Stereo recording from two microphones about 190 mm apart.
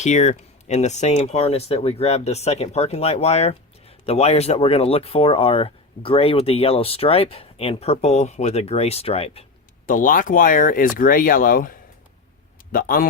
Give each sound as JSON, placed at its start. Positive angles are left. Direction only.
{"t": 0.0, "sound": "speech", "side_deg": 35}
{"t": 9.8, "sound": "speech", "side_deg": 45}